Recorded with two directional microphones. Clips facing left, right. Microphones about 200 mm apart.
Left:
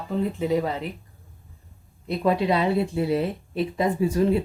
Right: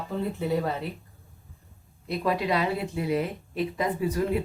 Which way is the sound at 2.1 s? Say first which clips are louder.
Left 4 dB; 25° left (ahead or behind).